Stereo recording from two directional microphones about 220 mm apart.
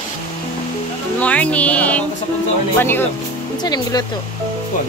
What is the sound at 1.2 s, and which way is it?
Speech, 5° left (ahead or behind).